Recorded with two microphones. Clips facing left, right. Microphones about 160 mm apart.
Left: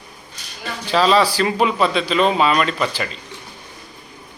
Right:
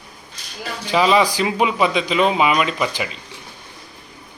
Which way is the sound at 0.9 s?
15° right (ahead or behind).